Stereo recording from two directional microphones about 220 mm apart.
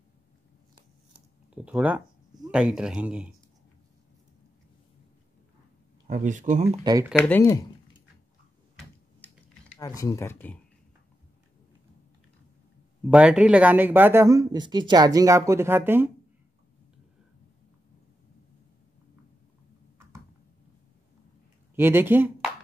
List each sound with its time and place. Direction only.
1.1 s a sound: 5° right (ahead or behind)
2.4 s speech: 5° right (ahead or behind)
6.0 s speech: 35° right (ahead or behind)
6.8 s speech: 15° right (ahead or behind)
7.2 s speech: 10° left (ahead or behind)
8.7 s a sound: centre (ahead or behind)
9.8 s speech: 15° left (ahead or behind)
13.0 s speech: 5° right (ahead or behind)
21.7 s speech: 10° right (ahead or behind)